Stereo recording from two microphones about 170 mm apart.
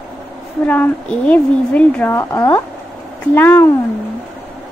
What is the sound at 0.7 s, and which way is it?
A woman's voice, 10° left (ahead or behind).